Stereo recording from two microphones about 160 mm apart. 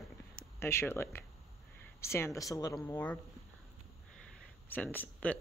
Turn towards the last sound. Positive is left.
turn(degrees=10)  # may be behind; listen again after turning